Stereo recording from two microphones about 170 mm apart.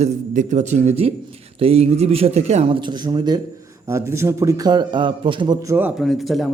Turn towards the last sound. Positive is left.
turn(degrees=0)  # may be behind; listen again after turning